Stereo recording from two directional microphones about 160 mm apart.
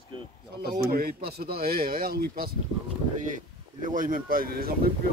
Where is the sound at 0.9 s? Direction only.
70° right (ahead or behind).